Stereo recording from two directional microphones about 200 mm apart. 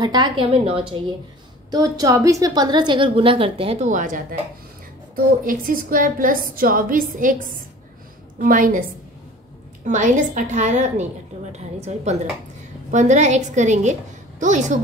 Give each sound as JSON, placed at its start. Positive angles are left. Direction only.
{"t": 0.0, "sound": "a woman's voice", "side_deg": -20}
{"t": 9.8, "sound": "a woman's voice", "side_deg": -40}